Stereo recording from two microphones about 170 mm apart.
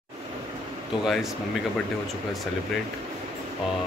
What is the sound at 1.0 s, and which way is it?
Speech, centre (ahead or behind).